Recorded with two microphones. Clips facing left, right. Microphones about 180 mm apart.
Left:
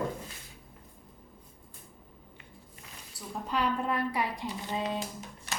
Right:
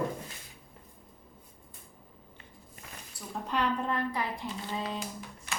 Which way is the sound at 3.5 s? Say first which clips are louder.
Even; centre (ahead or behind).